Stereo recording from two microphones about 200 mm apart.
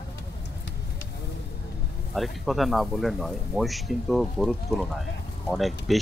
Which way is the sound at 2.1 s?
Centre (ahead or behind).